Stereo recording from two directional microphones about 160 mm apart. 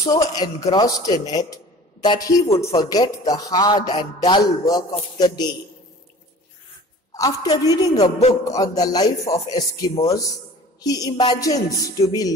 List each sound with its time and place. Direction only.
0.0 s a man's voice: 20° left (ahead or behind)
7.2 s a man's voice: 20° left (ahead or behind)